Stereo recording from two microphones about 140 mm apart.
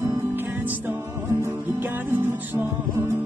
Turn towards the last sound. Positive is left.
turn(degrees=-15)  # may be behind; listen again after turning